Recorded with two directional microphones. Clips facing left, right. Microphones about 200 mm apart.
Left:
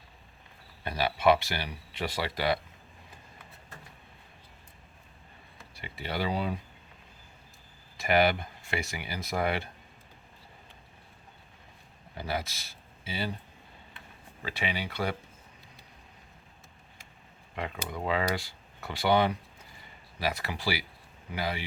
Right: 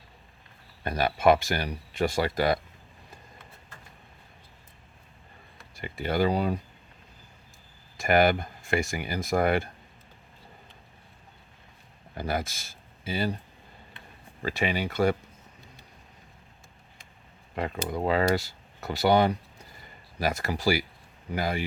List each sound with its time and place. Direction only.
0.9 s speech: 45° right (ahead or behind)
5.7 s speech: 45° right (ahead or behind)
7.9 s speech: 45° right (ahead or behind)
12.1 s speech: 50° right (ahead or behind)
14.4 s speech: 45° right (ahead or behind)
17.5 s speech: 40° right (ahead or behind)